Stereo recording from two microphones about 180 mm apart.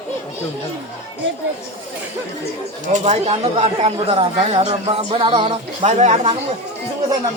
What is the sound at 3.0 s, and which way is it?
Speech, 35° right (ahead or behind).